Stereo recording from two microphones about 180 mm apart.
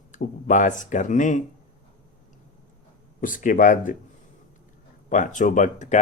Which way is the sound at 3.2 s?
50° left (ahead or behind).